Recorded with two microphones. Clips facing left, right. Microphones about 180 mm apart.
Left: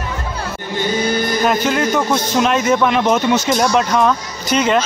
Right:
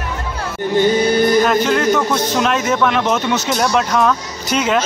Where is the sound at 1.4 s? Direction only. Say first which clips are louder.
Right 1 dB; 5° left (ahead or behind).